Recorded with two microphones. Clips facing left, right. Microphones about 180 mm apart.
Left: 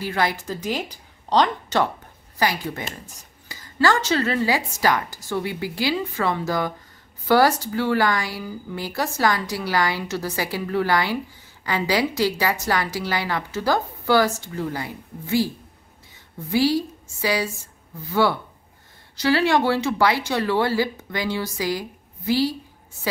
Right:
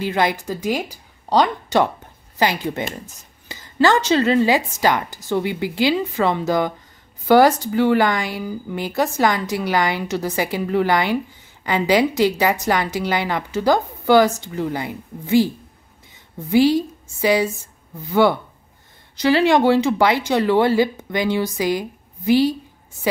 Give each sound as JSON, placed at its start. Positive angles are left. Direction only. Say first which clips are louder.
{"t": 0.0, "sound": "speech", "louder": "right 4 dB", "side_deg": -20}
{"t": 2.3, "sound": "a woman's voice", "louder": "right 4 dB", "side_deg": -25}